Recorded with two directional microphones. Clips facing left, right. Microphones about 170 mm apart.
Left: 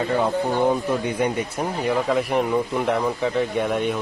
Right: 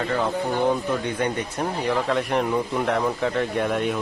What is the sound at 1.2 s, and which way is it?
Speech, 10° left (ahead or behind).